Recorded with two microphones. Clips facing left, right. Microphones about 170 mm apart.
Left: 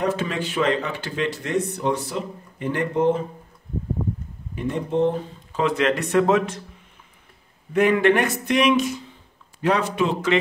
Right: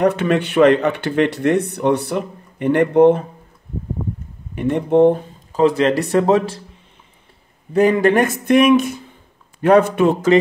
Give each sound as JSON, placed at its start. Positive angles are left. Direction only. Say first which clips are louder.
{"t": 0.0, "sound": "speech", "louder": "right 8 dB", "side_deg": -65}
{"t": 4.6, "sound": "speech", "louder": "right 8 dB", "side_deg": -65}
{"t": 5.5, "sound": "speech", "louder": "right 6 dB", "side_deg": -35}
{"t": 7.7, "sound": "speech", "louder": "right 4 dB", "side_deg": -35}